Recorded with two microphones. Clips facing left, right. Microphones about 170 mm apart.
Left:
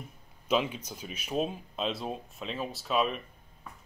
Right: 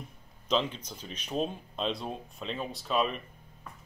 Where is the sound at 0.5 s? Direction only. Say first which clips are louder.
Left 1 dB; 10° left (ahead or behind).